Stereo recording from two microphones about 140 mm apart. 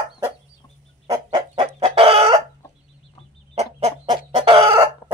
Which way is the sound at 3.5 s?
45° right (ahead or behind).